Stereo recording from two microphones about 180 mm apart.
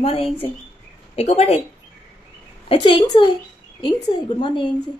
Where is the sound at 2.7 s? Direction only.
30° left (ahead or behind).